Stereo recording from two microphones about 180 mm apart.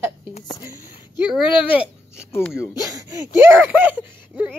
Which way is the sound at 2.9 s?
15° right (ahead or behind).